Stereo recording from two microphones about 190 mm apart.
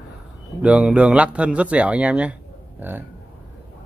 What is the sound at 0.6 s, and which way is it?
A man's voice, 5° right (ahead or behind).